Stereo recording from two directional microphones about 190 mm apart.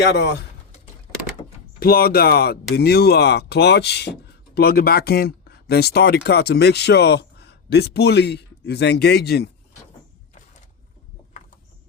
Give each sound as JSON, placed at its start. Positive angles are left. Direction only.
{"t": 0.0, "sound": "speech", "side_deg": 60}
{"t": 1.8, "sound": "speech", "side_deg": 50}